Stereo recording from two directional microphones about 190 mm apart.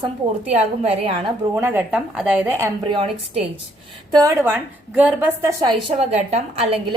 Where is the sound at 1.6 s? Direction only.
10° right (ahead or behind).